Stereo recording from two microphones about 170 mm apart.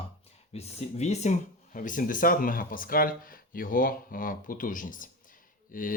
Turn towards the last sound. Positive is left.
turn(degrees=55)  # may be behind; listen again after turning